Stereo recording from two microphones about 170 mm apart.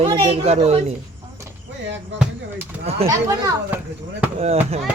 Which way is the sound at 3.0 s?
20° right (ahead or behind).